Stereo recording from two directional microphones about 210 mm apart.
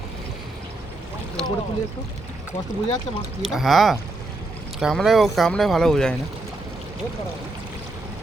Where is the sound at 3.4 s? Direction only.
Centre (ahead or behind).